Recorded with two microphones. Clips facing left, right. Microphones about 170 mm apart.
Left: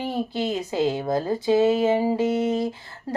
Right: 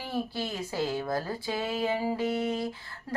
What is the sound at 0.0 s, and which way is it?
Speech, 20° left (ahead or behind).